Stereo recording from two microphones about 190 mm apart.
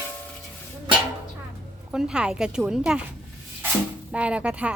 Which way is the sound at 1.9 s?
5° right (ahead or behind).